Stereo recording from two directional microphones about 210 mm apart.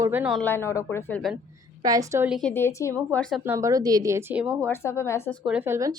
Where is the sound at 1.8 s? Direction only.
15° right (ahead or behind).